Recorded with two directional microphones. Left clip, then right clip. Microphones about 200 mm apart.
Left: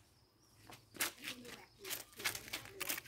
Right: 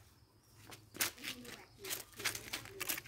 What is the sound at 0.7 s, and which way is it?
Bird, 30° right (ahead or behind).